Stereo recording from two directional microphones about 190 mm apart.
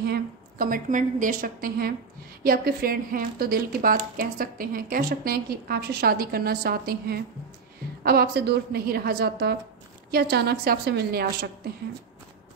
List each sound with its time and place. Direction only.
0.0 s a woman's voice: 50° right (ahead or behind)